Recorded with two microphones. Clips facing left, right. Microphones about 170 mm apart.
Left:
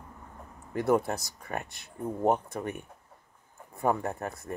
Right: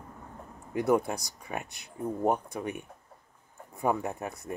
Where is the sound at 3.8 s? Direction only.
Centre (ahead or behind).